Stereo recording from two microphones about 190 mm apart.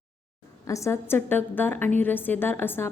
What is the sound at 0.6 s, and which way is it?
A woman's voice, 15° left (ahead or behind).